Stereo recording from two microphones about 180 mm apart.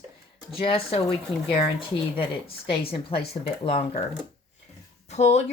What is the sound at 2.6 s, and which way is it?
A woman's voice, 30° left (ahead or behind).